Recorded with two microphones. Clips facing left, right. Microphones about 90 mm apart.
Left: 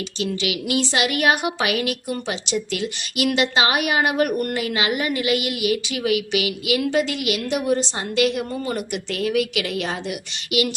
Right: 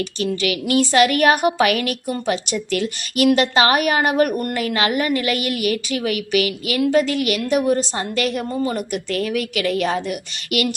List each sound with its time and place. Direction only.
0.2 s a woman's voice: 45° right (ahead or behind)